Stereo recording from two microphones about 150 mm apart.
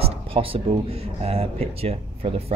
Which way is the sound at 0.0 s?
40° right (ahead or behind).